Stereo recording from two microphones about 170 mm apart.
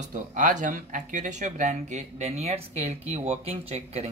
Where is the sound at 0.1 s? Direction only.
50° right (ahead or behind).